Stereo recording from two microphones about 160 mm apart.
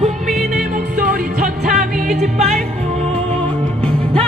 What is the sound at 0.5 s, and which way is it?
Music, 60° right (ahead or behind).